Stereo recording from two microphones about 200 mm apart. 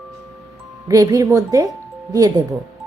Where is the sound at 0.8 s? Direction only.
15° right (ahead or behind).